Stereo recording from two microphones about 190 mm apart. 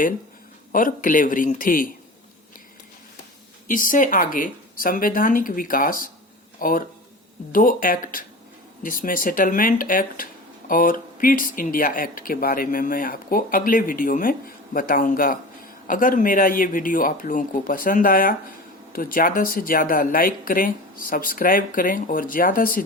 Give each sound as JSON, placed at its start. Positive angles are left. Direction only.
{"t": 0.7, "sound": "speech", "side_deg": 45}
{"t": 3.7, "sound": "speech", "side_deg": 45}